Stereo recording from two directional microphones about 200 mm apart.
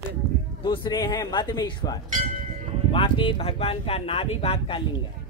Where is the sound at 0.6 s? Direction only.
20° left (ahead or behind).